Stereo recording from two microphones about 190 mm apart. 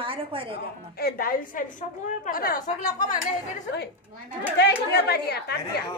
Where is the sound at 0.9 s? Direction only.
55° left (ahead or behind).